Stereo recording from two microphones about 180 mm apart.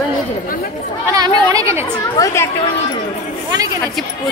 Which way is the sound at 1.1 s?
20° right (ahead or behind).